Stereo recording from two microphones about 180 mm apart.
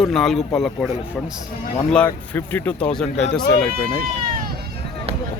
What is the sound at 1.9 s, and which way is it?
Speech, 10° left (ahead or behind).